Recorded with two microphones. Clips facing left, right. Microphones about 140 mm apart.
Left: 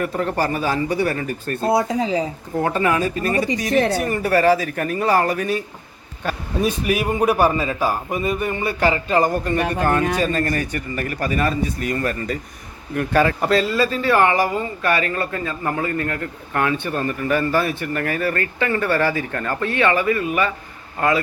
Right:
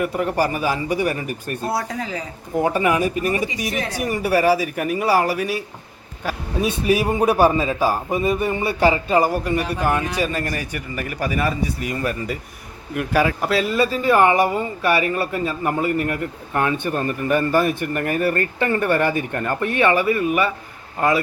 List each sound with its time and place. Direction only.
0.0 s a man's voice: 10° right (ahead or behind)
1.6 s speech: 20° left (ahead or behind)
2.6 s a man's voice: 15° right (ahead or behind)
6.2 s a sound: 10° right (ahead or behind)
6.8 s a man's voice: 30° right (ahead or behind)
7.3 s a man's voice: 10° right (ahead or behind)
7.6 s a man's voice: 20° right (ahead or behind)
7.9 s a man's voice: 10° right (ahead or behind)
13.7 s a man's voice: 20° right (ahead or behind)
14.5 s a man's voice: 10° right (ahead or behind)